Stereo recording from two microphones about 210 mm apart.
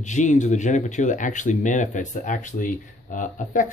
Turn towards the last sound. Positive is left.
turn(degrees=40)  # may be behind; listen again after turning